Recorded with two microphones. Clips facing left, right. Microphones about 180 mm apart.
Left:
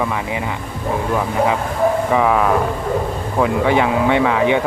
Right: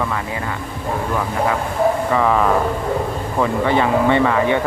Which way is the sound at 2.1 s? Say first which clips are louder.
Left 1 dB; 10° left (ahead or behind).